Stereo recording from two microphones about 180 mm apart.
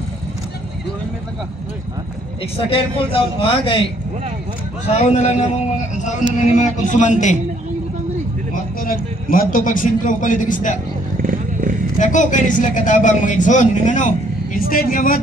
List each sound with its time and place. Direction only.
3.1 s a man's voice: 30° left (ahead or behind)
8.8 s a man's voice: 50° left (ahead or behind)
12.0 s a man's voice: 45° left (ahead or behind)